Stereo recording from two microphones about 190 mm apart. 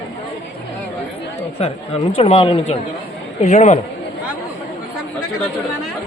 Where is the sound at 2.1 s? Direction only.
30° left (ahead or behind).